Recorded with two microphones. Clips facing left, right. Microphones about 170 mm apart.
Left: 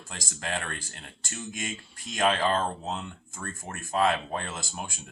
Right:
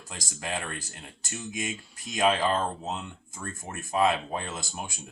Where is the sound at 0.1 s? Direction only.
10° right (ahead or behind).